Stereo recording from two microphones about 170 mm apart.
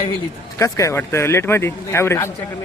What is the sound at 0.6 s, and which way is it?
Speech, 20° left (ahead or behind).